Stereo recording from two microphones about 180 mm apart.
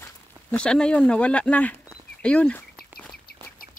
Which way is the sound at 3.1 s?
55° left (ahead or behind).